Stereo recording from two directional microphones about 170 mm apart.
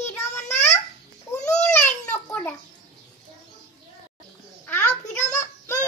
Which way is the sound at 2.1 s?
10° left (ahead or behind).